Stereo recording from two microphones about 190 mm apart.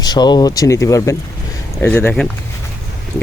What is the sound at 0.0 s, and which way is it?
Speech, 20° left (ahead or behind).